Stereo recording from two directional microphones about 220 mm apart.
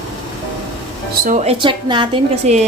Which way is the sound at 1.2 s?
35° right (ahead or behind).